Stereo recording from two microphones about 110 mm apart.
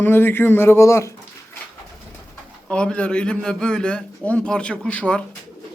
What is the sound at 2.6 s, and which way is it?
A man's voice, 10° left (ahead or behind).